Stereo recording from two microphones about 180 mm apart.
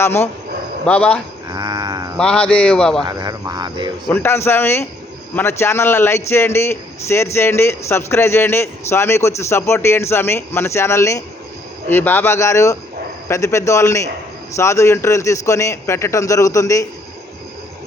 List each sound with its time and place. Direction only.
0.0 s a man's voice: 15° left (ahead or behind)
1.5 s a sound: 20° right (ahead or behind)
2.1 s a man's voice: 5° left (ahead or behind)
3.0 s speech: 20° right (ahead or behind)
4.1 s a man's voice: 15° left (ahead or behind)